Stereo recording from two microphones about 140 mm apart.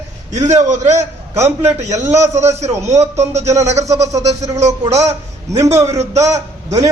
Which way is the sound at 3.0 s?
50° right (ahead or behind).